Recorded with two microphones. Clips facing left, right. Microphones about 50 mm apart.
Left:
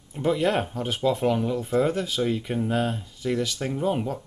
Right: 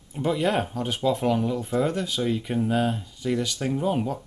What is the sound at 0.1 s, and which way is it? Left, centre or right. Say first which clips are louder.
Speech: left 1 dB; centre.